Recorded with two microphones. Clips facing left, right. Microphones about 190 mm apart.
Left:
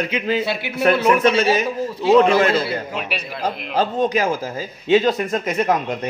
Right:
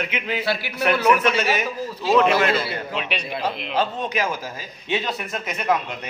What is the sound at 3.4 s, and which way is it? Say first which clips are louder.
Speech: left 3 dB; 45° left (ahead or behind).